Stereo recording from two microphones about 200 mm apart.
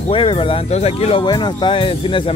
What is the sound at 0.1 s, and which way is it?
Speech, 25° left (ahead or behind).